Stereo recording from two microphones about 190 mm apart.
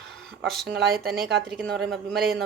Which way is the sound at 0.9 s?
50° right (ahead or behind).